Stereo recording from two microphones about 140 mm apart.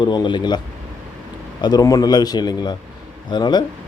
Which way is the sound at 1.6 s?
30° left (ahead or behind).